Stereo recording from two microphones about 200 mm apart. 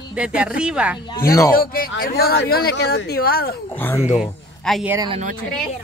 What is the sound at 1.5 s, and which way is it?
Speech, 45° left (ahead or behind).